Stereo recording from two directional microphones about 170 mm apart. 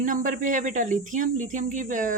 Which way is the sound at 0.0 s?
50° right (ahead or behind).